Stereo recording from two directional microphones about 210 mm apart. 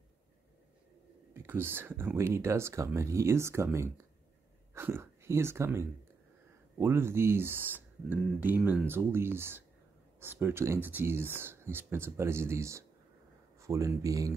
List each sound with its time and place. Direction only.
1.3 s speech: 10° right (ahead or behind)